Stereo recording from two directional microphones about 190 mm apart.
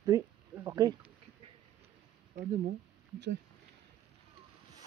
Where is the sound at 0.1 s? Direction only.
15° right (ahead or behind).